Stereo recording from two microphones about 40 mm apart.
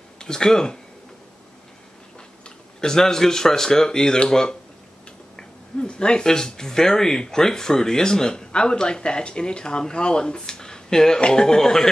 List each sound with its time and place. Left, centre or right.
0.2 s speech: centre
2.8 s speech: centre